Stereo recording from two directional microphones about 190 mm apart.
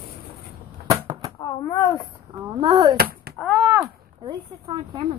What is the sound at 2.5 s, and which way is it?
Speech, 25° right (ahead or behind).